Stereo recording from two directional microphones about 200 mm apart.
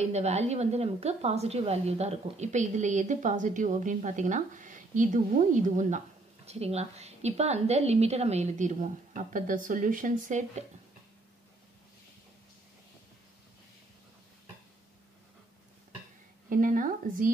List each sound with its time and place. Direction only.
0.0 s a woman's voice: 35° right (ahead or behind)
16.4 s speech: 40° right (ahead or behind)